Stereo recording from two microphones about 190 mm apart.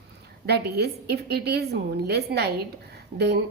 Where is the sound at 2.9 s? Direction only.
60° right (ahead or behind).